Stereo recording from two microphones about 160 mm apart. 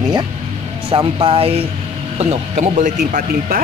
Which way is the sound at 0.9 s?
35° right (ahead or behind).